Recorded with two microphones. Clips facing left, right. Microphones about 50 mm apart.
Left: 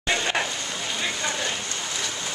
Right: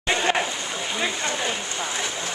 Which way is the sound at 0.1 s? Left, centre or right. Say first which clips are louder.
Right 3 dB; centre.